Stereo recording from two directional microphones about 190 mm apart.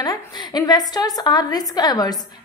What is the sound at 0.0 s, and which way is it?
A woman's voice, 20° left (ahead or behind).